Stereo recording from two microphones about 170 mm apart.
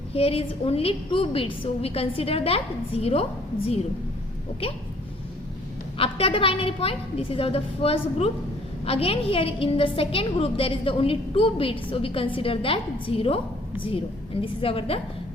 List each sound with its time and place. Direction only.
0.1 s a woman's voice: 35° left (ahead or behind)
4.6 s a woman's voice: 35° left (ahead or behind)
6.0 s a woman's voice: 30° left (ahead or behind)